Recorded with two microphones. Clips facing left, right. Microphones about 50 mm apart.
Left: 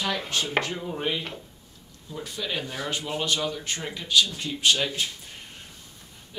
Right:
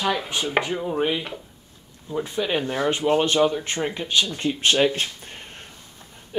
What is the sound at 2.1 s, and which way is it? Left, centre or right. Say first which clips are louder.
Speech: right 8 dB; right.